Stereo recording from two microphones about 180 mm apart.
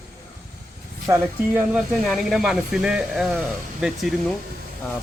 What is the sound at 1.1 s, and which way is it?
Speech, 10° right (ahead or behind).